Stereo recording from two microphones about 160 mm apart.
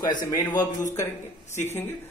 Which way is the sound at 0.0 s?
25° left (ahead or behind).